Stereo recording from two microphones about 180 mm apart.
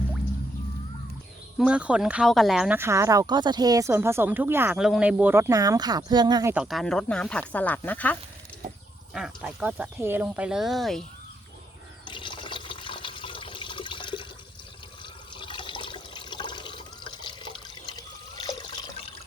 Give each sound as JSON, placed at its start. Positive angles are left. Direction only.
{"t": 1.5, "sound": "speech", "side_deg": -5}
{"t": 6.5, "sound": "speech", "side_deg": -5}
{"t": 9.1, "sound": "speech", "side_deg": -5}
{"t": 12.0, "sound": "water", "side_deg": 25}
{"t": 15.4, "sound": "water", "side_deg": 25}